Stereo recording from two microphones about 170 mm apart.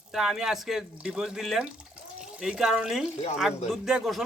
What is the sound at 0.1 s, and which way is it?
Speech, centre (ahead or behind).